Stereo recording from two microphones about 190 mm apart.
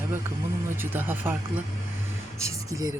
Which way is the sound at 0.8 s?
10° right (ahead or behind).